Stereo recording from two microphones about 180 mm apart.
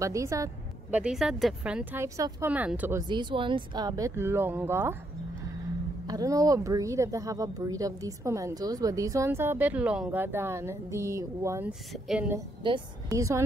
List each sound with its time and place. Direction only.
0.0 s a woman's voice: 15° right (ahead or behind)
0.9 s a woman's voice: 5° right (ahead or behind)
3.0 s speech: 25° right (ahead or behind)
6.0 s a woman's voice: 20° right (ahead or behind)
11.9 s speech: 5° right (ahead or behind)
12.6 s a woman's voice: 20° right (ahead or behind)